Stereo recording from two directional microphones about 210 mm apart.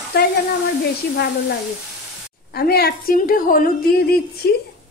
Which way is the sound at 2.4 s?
50° left (ahead or behind).